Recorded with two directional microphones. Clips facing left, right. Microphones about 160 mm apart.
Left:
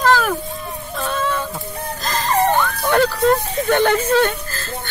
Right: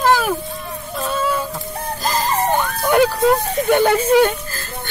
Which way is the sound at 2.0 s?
10° right (ahead or behind).